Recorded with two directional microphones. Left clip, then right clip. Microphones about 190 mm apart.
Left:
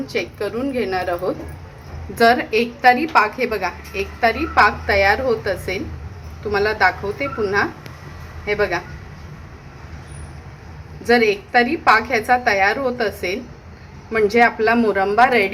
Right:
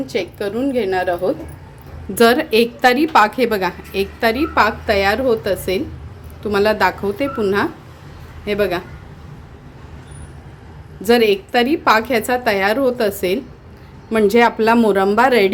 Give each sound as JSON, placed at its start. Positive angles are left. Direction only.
{"t": 0.1, "sound": "a woman's voice", "side_deg": -35}
{"t": 2.1, "sound": "a woman's voice", "side_deg": -55}
{"t": 4.5, "sound": "a woman's voice", "side_deg": -50}
{"t": 11.0, "sound": "a woman's voice", "side_deg": -55}